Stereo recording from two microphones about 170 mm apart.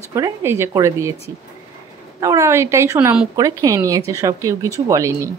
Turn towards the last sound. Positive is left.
turn(degrees=-20)  # may be behind; listen again after turning